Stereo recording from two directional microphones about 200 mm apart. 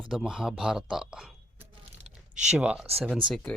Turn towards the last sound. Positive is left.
turn(degrees=0)  # may be behind; listen again after turning